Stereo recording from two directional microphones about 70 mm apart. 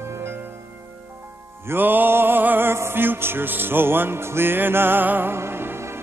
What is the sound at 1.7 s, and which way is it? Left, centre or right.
Music, right.